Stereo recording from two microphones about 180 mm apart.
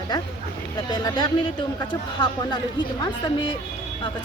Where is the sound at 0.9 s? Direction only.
25° left (ahead or behind).